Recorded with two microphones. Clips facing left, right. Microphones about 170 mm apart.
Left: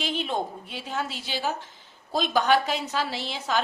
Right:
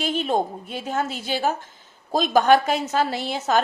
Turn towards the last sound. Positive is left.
turn(degrees=-45)  # may be behind; listen again after turning